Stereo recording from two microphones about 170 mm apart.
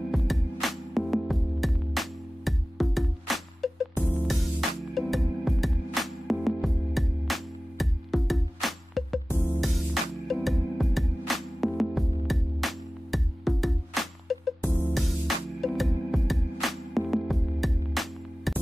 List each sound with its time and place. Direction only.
0.1 s music: centre (ahead or behind)